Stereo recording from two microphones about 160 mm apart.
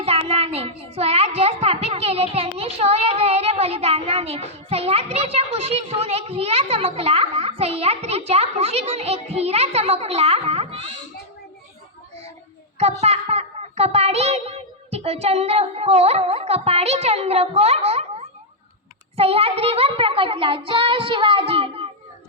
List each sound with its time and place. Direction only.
0.0 s a sound: 40° right (ahead or behind)
5.1 s a child's voice: 40° right (ahead or behind)
12.8 s a child's voice: 40° right (ahead or behind)